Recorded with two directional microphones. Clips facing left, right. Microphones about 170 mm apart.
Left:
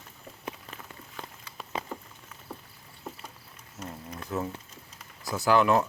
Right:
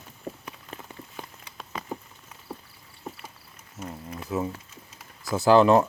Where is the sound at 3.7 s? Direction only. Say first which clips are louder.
Right 3 dB; 5° right (ahead or behind).